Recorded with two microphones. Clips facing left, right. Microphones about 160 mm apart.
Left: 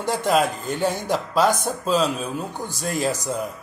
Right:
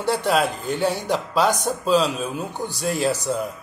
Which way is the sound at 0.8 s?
40° left (ahead or behind).